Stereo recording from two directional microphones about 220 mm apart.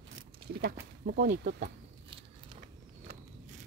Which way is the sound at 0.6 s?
45° right (ahead or behind).